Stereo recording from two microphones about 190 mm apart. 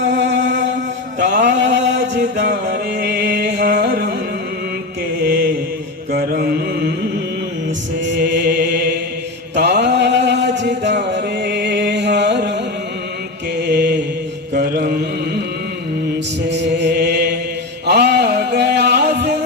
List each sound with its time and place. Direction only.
0.0 s music: 70° right (ahead or behind)
1.2 s mantra: 65° right (ahead or behind)
2.5 s music: 65° right (ahead or behind)
6.1 s mantra: 55° right (ahead or behind)
8.0 s mantra: 70° right (ahead or behind)
9.6 s a sound: 60° right (ahead or behind)
13.6 s mantra: 60° right (ahead or behind)
16.5 s mantra: 65° right (ahead or behind)
17.8 s a sound: 60° right (ahead or behind)